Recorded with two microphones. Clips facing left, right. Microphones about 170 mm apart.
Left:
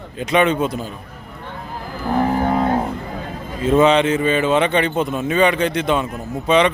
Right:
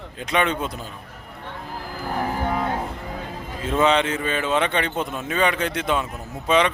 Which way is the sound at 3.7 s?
Centre (ahead or behind).